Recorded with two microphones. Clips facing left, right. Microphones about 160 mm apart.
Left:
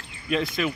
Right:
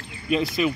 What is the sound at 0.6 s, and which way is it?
Speech, 5° right (ahead or behind).